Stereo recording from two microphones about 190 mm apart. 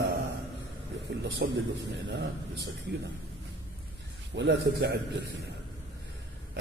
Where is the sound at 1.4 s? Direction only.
60° right (ahead or behind).